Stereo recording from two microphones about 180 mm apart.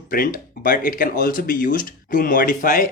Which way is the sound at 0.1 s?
55° left (ahead or behind).